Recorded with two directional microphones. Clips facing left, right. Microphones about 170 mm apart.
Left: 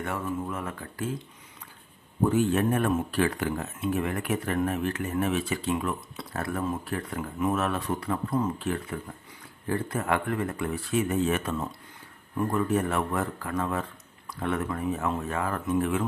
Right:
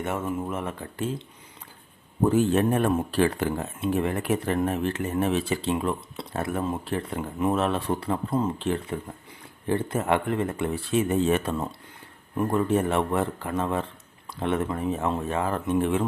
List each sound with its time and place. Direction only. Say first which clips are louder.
0.0 s speech: right 3 dB; 25° right (ahead or behind)
2.3 s speech: right 3 dB; 30° right (ahead or behind)